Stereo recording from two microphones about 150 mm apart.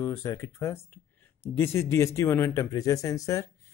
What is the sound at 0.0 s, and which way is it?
Speech, 20° left (ahead or behind).